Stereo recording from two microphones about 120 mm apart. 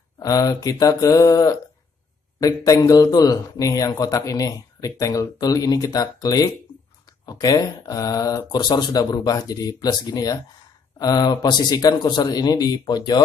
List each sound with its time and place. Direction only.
0.2 s speech: 30° left (ahead or behind)